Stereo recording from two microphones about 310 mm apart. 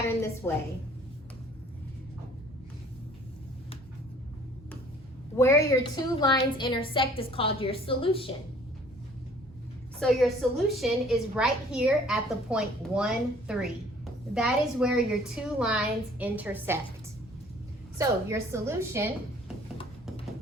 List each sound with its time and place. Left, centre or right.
0.4 s a woman's voice: centre
5.4 s a woman's voice: centre
10.0 s a woman's voice: centre
17.9 s a woman's voice: centre